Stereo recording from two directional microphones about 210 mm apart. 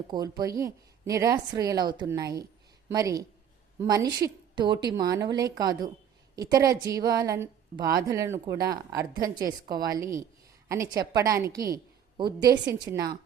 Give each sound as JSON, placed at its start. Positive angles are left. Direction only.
{"t": 0.1, "sound": "a woman's voice", "side_deg": -20}